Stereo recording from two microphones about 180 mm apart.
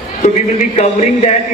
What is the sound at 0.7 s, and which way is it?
Speech, 40° left (ahead or behind).